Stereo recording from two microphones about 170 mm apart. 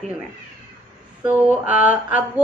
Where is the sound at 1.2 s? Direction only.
10° right (ahead or behind).